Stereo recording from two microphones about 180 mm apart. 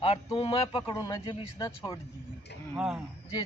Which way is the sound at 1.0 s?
20° left (ahead or behind).